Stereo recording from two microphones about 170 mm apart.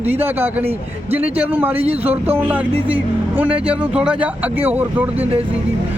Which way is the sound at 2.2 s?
10° right (ahead or behind).